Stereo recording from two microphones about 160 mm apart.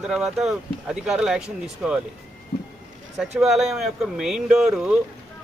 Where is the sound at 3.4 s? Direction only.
Centre (ahead or behind).